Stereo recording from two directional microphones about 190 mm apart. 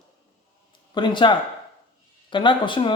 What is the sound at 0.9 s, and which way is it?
Speech, 25° left (ahead or behind).